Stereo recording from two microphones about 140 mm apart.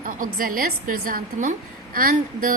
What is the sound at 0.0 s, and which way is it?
A woman's voice, 80° right.